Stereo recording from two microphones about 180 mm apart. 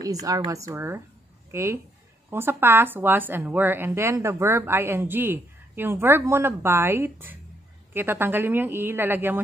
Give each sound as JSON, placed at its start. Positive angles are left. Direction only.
{"t": 0.0, "sound": "speech", "side_deg": -20}